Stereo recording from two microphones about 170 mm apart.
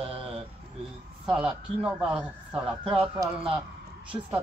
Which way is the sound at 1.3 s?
5° right (ahead or behind).